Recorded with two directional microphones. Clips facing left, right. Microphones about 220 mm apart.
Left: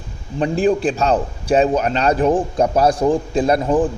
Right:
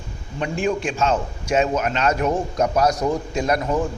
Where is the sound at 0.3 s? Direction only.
35° left (ahead or behind).